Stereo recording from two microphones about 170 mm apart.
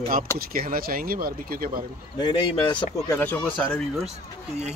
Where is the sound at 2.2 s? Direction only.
25° left (ahead or behind).